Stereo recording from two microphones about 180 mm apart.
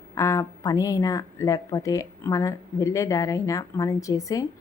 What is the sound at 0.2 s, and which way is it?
A woman's voice, 15° left (ahead or behind).